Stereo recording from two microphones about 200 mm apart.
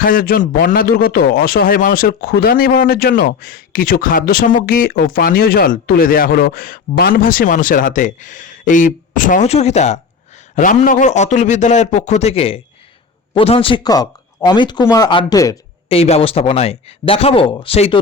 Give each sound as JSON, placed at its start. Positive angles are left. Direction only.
{"t": 0.0, "sound": "a man's voice", "side_deg": 45}
{"t": 15.9, "sound": "speech", "side_deg": 30}